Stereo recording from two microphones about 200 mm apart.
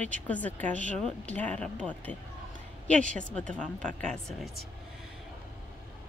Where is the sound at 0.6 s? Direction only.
40° right (ahead or behind).